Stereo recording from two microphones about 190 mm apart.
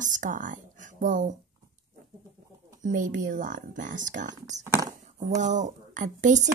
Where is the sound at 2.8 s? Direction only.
45° right (ahead or behind).